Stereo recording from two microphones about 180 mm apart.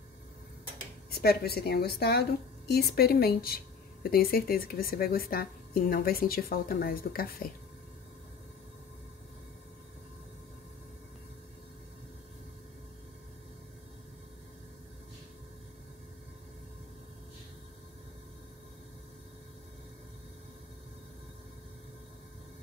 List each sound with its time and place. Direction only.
1.2 s a woman's voice: 60° left (ahead or behind)